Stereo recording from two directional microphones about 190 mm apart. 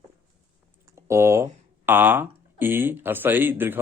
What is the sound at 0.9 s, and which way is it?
Speech, 15° right (ahead or behind).